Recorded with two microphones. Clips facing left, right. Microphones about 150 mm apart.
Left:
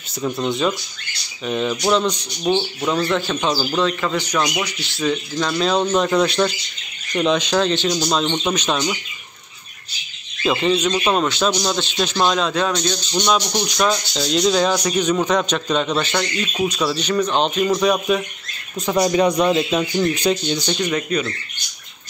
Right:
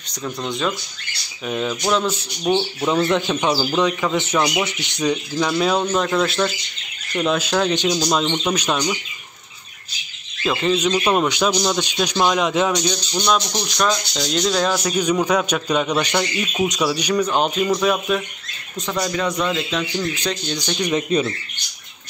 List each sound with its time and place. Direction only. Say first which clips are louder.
0.1 s speech: left 4 dB; 5° left (ahead or behind)
2.9 s a man's voice: right 2 dB; 20° right (ahead or behind)
8.1 s speech: even; centre (ahead or behind)
10.4 s speech: left 2 dB; centre (ahead or behind)
10.8 s a man's voice: right 1 dB; 10° right (ahead or behind)
12.9 s a man's voice: left 1 dB; centre (ahead or behind)
18.8 s speech: left 6 dB; 20° left (ahead or behind)
20.2 s speech: left 5 dB; 10° left (ahead or behind)
21.1 s speech: right 5 dB; 25° right (ahead or behind)